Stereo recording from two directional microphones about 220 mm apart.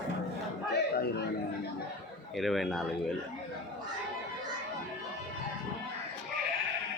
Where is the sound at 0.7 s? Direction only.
50° left (ahead or behind).